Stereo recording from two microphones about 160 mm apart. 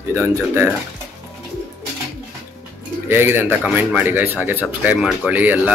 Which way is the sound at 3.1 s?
15° right (ahead or behind).